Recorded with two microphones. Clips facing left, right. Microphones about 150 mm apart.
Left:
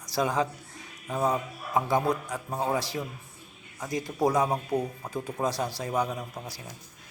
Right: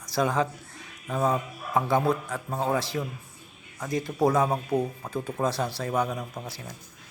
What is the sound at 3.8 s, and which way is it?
Speech, 20° left (ahead or behind).